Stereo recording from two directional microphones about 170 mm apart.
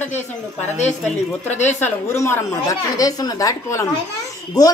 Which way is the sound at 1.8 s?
15° left (ahead or behind).